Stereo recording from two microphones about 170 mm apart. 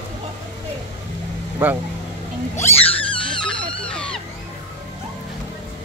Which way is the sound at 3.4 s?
5° left (ahead or behind).